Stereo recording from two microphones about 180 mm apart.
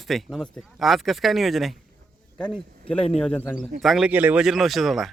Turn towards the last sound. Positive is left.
turn(degrees=0)  # may be behind; listen again after turning